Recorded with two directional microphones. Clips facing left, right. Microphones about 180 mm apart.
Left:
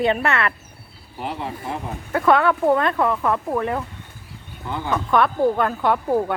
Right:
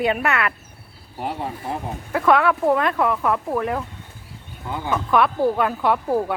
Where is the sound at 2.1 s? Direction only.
Centre (ahead or behind).